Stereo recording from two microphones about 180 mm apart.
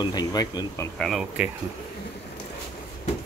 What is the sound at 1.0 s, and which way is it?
Speech, centre (ahead or behind).